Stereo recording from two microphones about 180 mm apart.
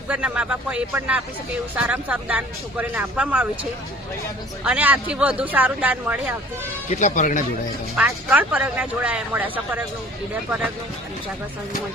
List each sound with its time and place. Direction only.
0.1 s speech: 5° right (ahead or behind)
6.9 s speech: 45° left (ahead or behind)
7.9 s speech: 5° right (ahead or behind)